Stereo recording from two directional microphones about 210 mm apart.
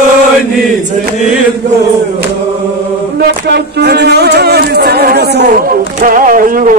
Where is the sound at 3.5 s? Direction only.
50° right (ahead or behind).